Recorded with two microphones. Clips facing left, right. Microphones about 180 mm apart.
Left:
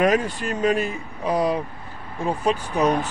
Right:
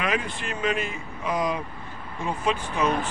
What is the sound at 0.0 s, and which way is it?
Speech, 40° left (ahead or behind).